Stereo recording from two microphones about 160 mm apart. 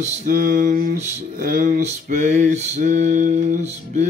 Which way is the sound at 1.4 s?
55° right (ahead or behind).